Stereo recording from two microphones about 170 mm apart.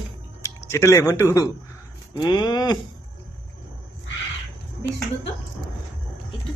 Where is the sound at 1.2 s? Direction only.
20° left (ahead or behind).